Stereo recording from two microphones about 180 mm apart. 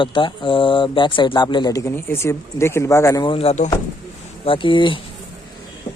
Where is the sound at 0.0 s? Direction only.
25° left (ahead or behind).